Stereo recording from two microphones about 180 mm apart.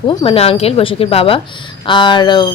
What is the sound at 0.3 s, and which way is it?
A woman's voice, 35° left (ahead or behind).